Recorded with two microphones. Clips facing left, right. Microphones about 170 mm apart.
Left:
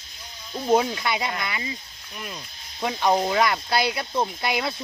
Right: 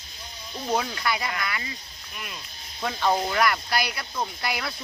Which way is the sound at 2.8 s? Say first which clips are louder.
Left 3 dB; 20° left (ahead or behind).